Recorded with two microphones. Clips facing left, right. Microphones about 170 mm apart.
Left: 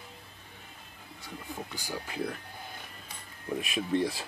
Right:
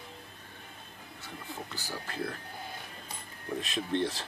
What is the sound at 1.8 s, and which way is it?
Speech, 15° left (ahead or behind).